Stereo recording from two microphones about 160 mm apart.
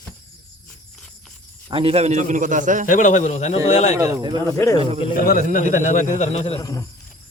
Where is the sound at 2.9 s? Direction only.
50° left (ahead or behind).